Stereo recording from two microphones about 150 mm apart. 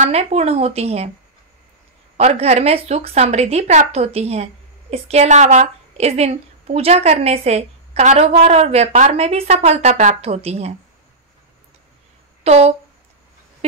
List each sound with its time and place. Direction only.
0.0 s a woman's voice: 45° right (ahead or behind)
2.1 s a woman's voice: 45° right (ahead or behind)
12.4 s speech: 50° right (ahead or behind)